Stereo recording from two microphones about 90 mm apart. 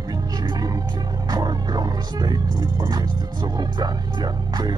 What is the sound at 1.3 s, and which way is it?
Speech, 45° right (ahead or behind).